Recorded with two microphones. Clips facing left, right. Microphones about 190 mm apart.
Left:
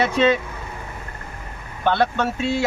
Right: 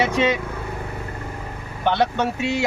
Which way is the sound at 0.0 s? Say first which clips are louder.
Left 2 dB; 15° right (ahead or behind).